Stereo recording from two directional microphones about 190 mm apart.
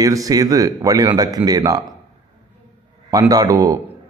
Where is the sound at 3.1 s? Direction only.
20° right (ahead or behind).